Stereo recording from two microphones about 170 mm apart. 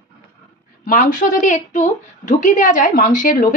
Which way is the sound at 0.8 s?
50° left (ahead or behind).